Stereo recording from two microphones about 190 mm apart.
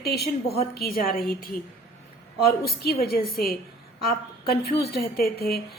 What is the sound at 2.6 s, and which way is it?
A woman's voice, 55° left (ahead or behind).